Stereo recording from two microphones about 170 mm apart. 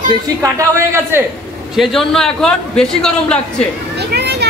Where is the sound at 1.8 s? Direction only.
Centre (ahead or behind).